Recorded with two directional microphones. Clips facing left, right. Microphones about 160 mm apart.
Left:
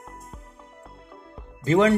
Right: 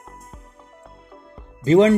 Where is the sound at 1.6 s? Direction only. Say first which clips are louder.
Right 5 dB; 25° right (ahead or behind).